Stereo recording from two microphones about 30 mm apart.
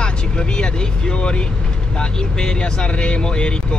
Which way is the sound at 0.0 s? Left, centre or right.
Left.